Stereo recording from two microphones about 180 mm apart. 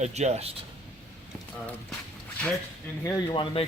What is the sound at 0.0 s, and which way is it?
Speech, 40° right (ahead or behind).